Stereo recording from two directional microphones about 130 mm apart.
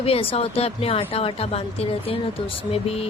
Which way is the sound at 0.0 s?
45° left (ahead or behind).